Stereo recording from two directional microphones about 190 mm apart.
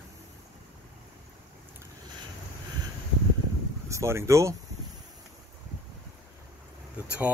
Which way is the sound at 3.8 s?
15° right (ahead or behind).